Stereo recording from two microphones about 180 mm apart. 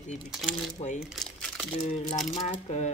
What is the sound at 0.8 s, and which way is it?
Speech, 35° left (ahead or behind).